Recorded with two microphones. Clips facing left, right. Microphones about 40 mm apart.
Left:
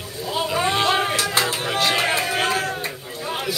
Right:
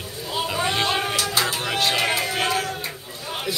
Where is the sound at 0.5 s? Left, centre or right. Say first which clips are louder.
Left 3 dB; centre.